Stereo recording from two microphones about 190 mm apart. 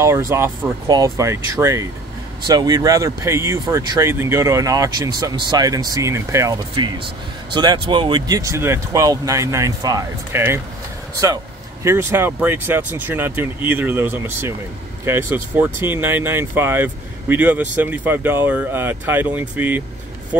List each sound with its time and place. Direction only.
0.3 s speech: 15° right (ahead or behind)
11.8 s speech: 15° right (ahead or behind)